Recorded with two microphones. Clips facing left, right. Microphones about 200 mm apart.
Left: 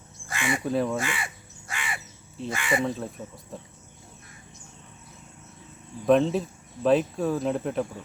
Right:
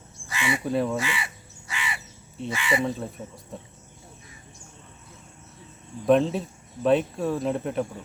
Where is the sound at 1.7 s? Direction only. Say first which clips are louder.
Right 1 dB; 50° left (ahead or behind).